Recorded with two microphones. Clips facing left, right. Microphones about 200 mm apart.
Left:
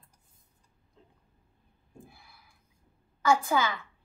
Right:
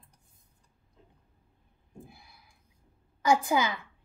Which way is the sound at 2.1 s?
20° right (ahead or behind).